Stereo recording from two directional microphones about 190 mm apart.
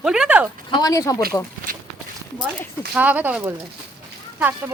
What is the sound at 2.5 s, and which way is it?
Speech, 5° right (ahead or behind).